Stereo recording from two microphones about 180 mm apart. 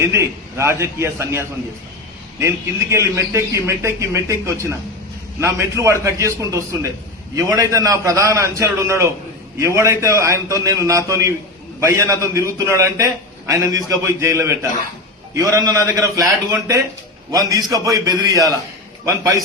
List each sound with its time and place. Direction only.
0.0 s a man's voice: 15° right (ahead or behind)